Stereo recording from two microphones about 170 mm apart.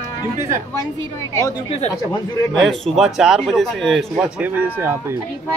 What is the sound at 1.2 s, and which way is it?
Speech, 20° left (ahead or behind).